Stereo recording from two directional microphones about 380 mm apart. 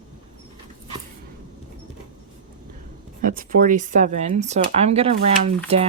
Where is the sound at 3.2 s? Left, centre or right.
Right.